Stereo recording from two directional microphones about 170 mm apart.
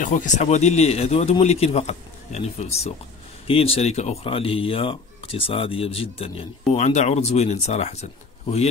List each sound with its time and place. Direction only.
0.0 s speech: 50° left (ahead or behind)